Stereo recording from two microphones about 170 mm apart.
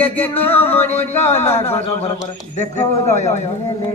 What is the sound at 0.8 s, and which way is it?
A man's voice, 40° left (ahead or behind).